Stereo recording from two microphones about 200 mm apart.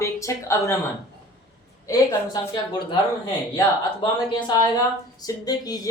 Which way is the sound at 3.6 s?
25° left (ahead or behind).